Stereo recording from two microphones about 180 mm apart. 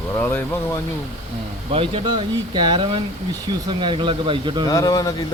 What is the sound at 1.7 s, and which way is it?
Speech, 30° right (ahead or behind).